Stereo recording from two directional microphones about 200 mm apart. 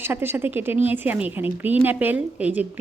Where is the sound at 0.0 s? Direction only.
10° right (ahead or behind).